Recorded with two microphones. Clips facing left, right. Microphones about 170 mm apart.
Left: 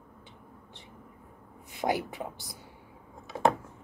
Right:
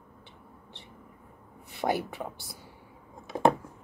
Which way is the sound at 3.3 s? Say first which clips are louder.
Right 2 dB; 35° right (ahead or behind).